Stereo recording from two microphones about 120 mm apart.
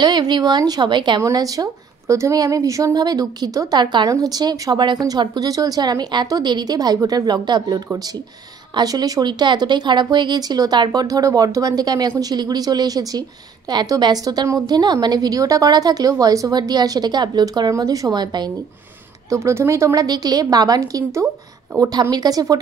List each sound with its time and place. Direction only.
0.0 s a woman's voice: 40° right (ahead or behind)
19.3 s a woman's voice: 25° right (ahead or behind)